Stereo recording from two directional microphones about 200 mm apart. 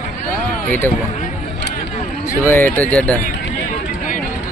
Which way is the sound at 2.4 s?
10° left (ahead or behind).